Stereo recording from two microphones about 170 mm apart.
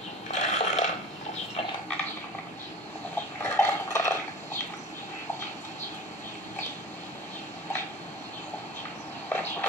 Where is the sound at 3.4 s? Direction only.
15° left (ahead or behind).